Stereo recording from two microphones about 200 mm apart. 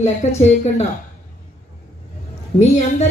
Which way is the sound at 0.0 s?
35° left (ahead or behind).